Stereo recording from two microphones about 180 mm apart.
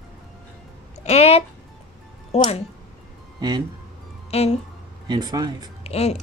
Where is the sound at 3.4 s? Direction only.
20° right (ahead or behind).